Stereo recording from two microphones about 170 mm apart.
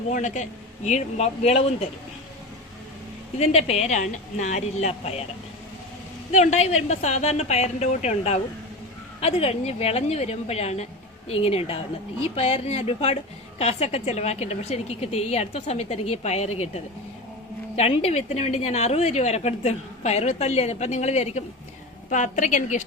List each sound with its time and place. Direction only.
0.1 s a woman's voice: 45° left (ahead or behind)
3.3 s a woman's voice: 40° left (ahead or behind)
6.3 s a woman's voice: 40° left (ahead or behind)